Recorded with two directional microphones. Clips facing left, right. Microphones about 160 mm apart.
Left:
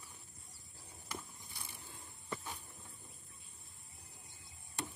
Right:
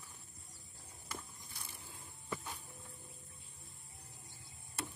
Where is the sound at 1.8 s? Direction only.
Centre (ahead or behind).